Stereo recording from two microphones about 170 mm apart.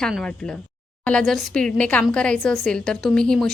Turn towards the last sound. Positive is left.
turn(degrees=5)  # may be behind; listen again after turning